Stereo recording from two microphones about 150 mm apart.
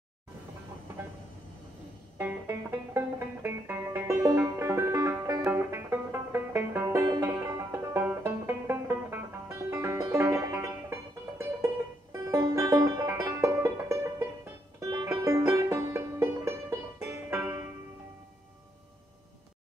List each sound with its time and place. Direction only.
2.1 s music: 15° right (ahead or behind)